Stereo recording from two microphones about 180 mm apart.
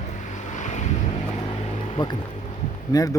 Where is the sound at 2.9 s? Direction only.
20° left (ahead or behind).